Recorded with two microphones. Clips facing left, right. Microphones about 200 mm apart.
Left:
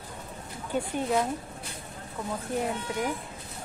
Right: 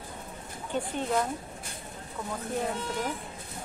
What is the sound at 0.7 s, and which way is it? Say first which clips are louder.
Speech: left 2 dB; 10° left (ahead or behind).